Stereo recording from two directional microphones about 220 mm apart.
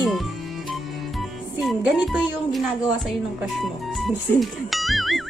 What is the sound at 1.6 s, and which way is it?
A woman's voice, 5° right (ahead or behind).